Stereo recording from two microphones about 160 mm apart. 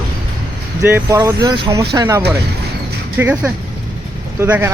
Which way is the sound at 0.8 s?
15° right (ahead or behind).